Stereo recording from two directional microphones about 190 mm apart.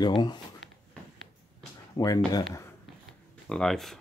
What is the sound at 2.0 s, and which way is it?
Speech, 20° left (ahead or behind).